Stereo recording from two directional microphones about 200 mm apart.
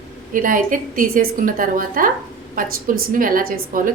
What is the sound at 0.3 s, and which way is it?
A woman's voice, 40° right (ahead or behind).